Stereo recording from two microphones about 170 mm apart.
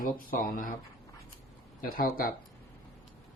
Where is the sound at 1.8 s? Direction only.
60° left (ahead or behind).